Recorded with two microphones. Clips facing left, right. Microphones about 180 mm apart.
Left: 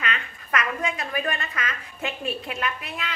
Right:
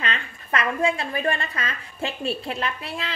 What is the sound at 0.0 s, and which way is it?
A woman's voice, 30° right (ahead or behind).